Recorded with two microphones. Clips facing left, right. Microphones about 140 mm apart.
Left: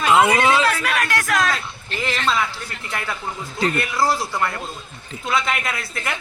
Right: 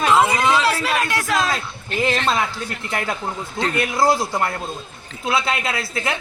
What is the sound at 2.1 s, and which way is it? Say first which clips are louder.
Speech: left 3 dB; 45° right (ahead or behind).